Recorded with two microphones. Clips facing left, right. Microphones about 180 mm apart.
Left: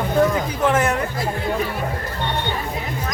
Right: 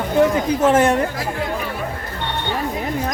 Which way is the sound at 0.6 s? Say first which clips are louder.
Right 4 dB; 30° right (ahead or behind).